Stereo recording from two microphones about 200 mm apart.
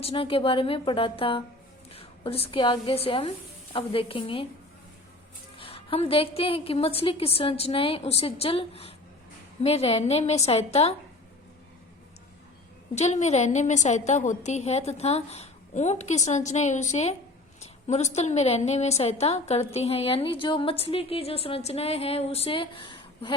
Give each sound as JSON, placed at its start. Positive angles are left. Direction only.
{"t": 0.0, "sound": "a woman's voice", "side_deg": 25}
{"t": 5.5, "sound": "a woman's voice", "side_deg": 30}
{"t": 12.9, "sound": "a woman's voice", "side_deg": 35}